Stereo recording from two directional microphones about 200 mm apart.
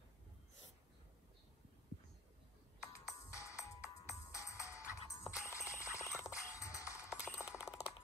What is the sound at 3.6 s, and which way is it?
Music, 15° left (ahead or behind).